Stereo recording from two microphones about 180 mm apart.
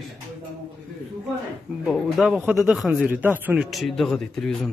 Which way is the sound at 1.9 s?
Centre (ahead or behind).